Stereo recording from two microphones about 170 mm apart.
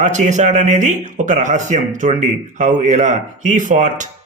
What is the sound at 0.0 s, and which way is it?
A man's voice, 45° right (ahead or behind).